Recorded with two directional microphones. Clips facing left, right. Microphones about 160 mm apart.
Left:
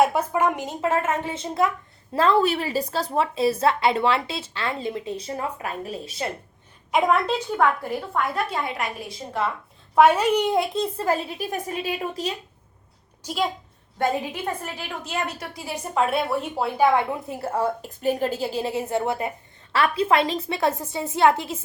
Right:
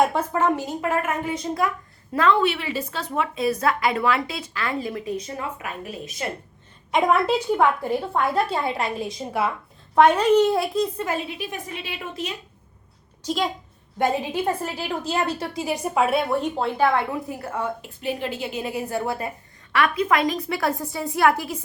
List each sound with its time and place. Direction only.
0.0 s a woman's voice: 10° left (ahead or behind); by 6.2 s 35° left (ahead or behind)
6.9 s a woman's voice: 5° right (ahead or behind)
8.1 s a woman's voice: 30° right (ahead or behind)
9.4 s a woman's voice: 10° right (ahead or behind)
9.9 s a child's voice: 5° left (ahead or behind); by 10.8 s 20° left (ahead or behind)
10.9 s a woman's voice: 35° left (ahead or behind)
14.6 s a woman's voice: 35° right (ahead or behind)
15.5 s a woman's voice: 15° right (ahead or behind); by 21.6 s 25° left (ahead or behind)